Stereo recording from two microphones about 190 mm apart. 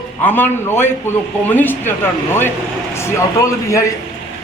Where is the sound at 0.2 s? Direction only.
10° left (ahead or behind).